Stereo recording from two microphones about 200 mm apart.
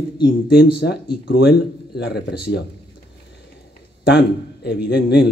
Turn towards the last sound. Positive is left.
turn(degrees=50)  # may be behind; listen again after turning